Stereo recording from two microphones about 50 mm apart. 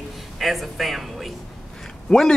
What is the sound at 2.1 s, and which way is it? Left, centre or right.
Speech, centre.